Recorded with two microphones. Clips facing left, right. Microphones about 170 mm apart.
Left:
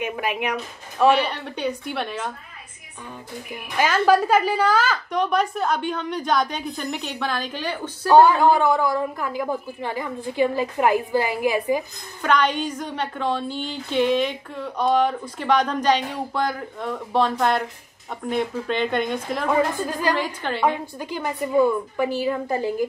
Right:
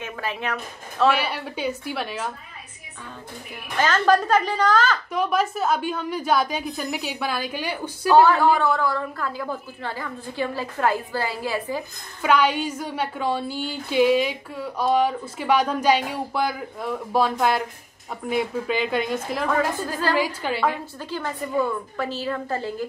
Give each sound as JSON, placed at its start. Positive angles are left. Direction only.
{"t": 0.0, "sound": "speech", "side_deg": 15}
{"t": 1.1, "sound": "a woman's voice", "side_deg": -5}
{"t": 3.7, "sound": "a woman's voice", "side_deg": 10}
{"t": 5.1, "sound": "a woman's voice", "side_deg": -5}
{"t": 8.1, "sound": "a woman's voice", "side_deg": 15}
{"t": 12.2, "sound": "a woman's voice", "side_deg": -5}
{"t": 19.5, "sound": "a woman's voice", "side_deg": 15}
{"t": 20.2, "sound": "a woman's voice", "side_deg": -5}
{"t": 20.6, "sound": "a woman's voice", "side_deg": 15}